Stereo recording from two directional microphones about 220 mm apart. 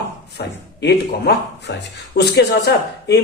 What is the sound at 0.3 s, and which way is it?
Speech, 50° left (ahead or behind).